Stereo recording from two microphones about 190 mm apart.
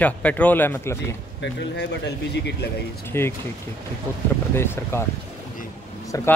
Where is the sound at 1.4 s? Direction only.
65° left (ahead or behind).